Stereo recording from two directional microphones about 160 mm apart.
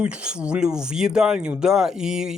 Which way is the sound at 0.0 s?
5° right (ahead or behind).